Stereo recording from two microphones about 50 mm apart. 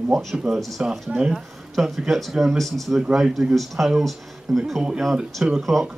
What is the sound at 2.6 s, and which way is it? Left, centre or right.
Speech, centre.